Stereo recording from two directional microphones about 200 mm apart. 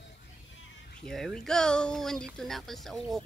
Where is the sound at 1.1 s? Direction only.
Centre (ahead or behind).